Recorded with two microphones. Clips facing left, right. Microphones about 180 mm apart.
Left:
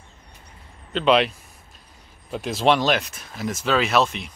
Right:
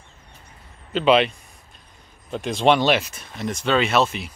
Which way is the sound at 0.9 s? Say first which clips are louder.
Right 1 dB; centre (ahead or behind).